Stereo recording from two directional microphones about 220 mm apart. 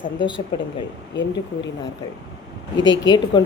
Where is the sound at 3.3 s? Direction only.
20° left (ahead or behind).